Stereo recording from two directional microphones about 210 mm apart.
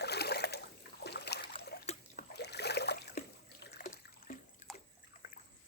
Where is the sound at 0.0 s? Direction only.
50° left (ahead or behind).